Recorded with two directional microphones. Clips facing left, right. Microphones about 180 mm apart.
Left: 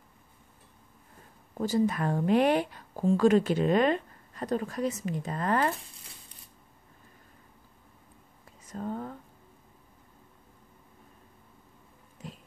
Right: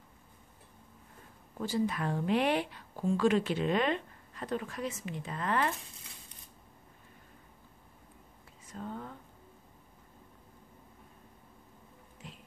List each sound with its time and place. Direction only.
1.6 s speech: 45° left (ahead or behind)
8.6 s speech: 45° left (ahead or behind)
12.2 s a sound: 40° left (ahead or behind)